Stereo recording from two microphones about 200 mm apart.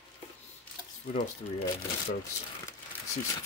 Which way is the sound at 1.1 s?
40° left (ahead or behind).